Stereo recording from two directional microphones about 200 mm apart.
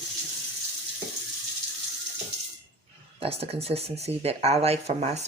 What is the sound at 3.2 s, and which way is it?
Speech, 30° right (ahead or behind).